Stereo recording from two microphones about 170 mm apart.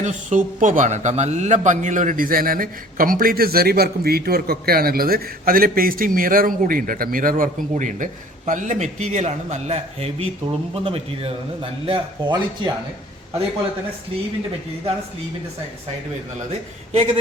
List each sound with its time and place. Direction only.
0.0 s a man's voice: 45° right (ahead or behind); by 12.7 s 30° right (ahead or behind)
16.9 s speech: 40° right (ahead or behind)